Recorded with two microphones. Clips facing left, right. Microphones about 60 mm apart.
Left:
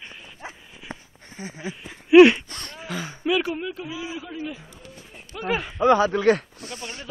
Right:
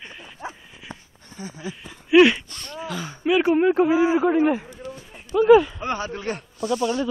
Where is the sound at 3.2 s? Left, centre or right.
Right.